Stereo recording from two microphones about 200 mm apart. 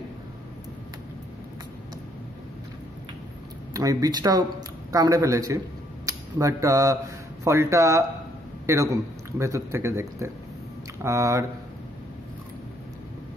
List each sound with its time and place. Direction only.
3.7 s speech: 15° right (ahead or behind)